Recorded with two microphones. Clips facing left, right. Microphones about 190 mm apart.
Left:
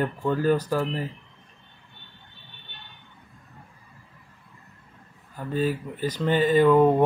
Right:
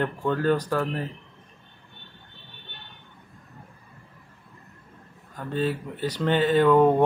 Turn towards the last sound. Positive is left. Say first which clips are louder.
# even
turn(degrees=5)  # may be behind; listen again after turning